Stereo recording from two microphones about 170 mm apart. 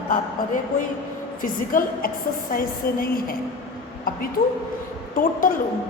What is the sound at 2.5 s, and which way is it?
Speech, 60° left (ahead or behind).